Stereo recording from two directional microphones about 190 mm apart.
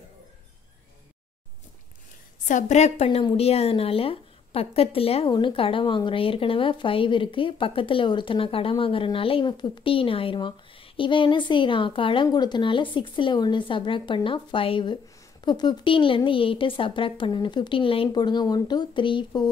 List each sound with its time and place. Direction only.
2.4 s a woman's voice: 40° left (ahead or behind); by 19.5 s 25° left (ahead or behind)